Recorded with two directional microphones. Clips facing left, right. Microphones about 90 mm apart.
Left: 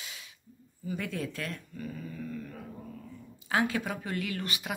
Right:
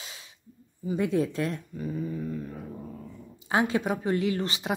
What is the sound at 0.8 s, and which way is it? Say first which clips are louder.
Speech: right 9 dB; 20° right (ahead or behind).